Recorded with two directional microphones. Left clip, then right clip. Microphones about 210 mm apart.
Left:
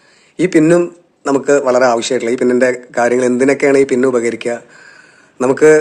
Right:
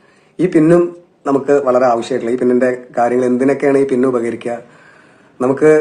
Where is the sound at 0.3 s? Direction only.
35° left (ahead or behind).